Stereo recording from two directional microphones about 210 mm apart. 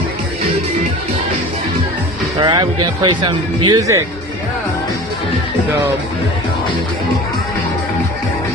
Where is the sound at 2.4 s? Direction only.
25° right (ahead or behind).